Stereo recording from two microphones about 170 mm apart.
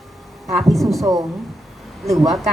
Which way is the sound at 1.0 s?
20° right (ahead or behind).